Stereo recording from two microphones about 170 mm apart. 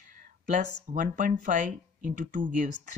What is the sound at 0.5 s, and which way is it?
Speech, 50° right (ahead or behind).